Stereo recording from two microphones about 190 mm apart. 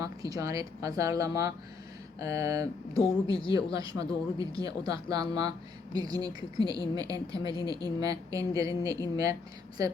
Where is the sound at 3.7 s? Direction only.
20° right (ahead or behind).